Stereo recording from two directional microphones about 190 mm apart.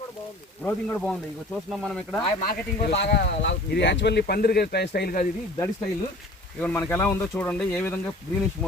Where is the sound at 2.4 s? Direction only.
55° left (ahead or behind).